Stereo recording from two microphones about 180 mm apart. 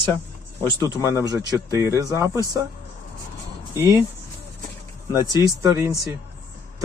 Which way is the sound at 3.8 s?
15° right (ahead or behind).